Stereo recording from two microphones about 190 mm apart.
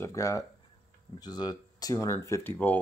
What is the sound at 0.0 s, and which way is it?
Speech, 15° left (ahead or behind).